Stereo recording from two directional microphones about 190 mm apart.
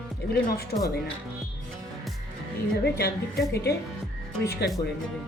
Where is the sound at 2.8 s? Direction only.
60° left (ahead or behind).